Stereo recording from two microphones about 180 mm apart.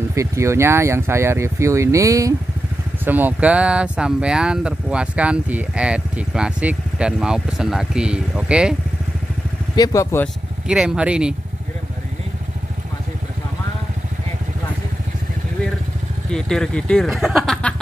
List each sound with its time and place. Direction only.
0.1 s speech: 15° right (ahead or behind)
9.8 s speech: 15° left (ahead or behind)
10.7 s speech: 5° right (ahead or behind)
16.3 s speech: 5° left (ahead or behind)